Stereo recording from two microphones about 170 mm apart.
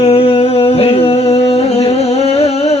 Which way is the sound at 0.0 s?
35° left (ahead or behind).